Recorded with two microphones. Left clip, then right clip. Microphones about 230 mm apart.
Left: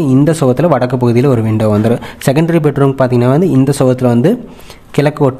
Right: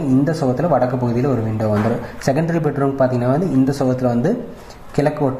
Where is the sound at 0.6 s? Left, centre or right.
Left.